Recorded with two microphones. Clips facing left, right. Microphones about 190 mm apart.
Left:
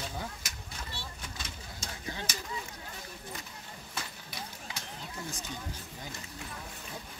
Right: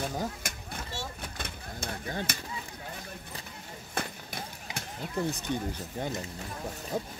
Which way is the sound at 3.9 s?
55° right (ahead or behind).